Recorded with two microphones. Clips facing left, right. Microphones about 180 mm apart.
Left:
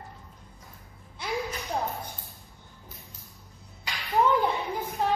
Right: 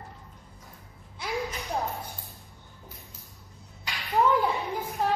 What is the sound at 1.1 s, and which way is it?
Gasp, centre (ahead or behind).